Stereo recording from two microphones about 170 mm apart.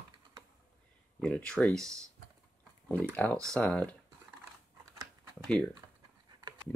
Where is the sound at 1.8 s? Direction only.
20° right (ahead or behind).